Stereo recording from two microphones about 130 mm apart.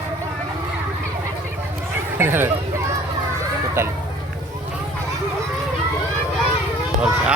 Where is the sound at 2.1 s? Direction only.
15° right (ahead or behind).